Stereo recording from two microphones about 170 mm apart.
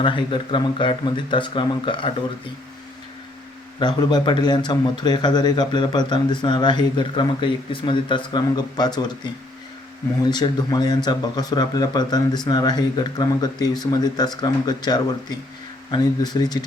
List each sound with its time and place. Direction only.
0.0 s a man's voice: 30° left (ahead or behind)
3.8 s a man's voice: 25° left (ahead or behind)
10.2 s a man's voice: 25° left (ahead or behind)